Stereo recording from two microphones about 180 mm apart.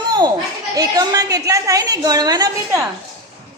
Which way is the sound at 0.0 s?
25° right (ahead or behind).